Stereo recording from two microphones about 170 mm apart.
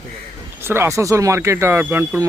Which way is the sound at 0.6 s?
15° right (ahead or behind).